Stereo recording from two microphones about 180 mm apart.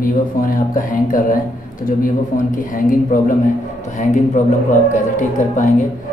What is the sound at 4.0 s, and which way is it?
A man's voice, 40° left (ahead or behind).